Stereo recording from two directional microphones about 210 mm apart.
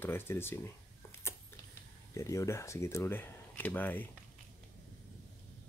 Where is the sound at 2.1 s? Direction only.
15° left (ahead or behind).